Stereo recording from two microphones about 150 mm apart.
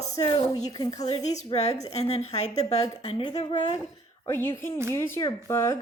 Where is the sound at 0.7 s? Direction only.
25° left (ahead or behind).